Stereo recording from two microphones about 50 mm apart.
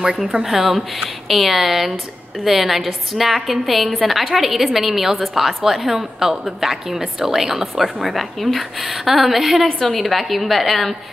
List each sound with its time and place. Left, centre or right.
0.0 s a woman's voice: centre